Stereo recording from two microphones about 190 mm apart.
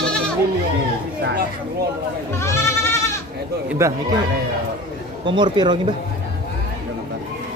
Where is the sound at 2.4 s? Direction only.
15° left (ahead or behind).